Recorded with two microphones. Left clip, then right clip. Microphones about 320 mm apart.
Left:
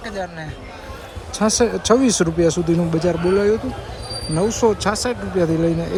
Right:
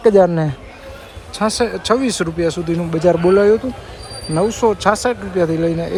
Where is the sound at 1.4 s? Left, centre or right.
Centre.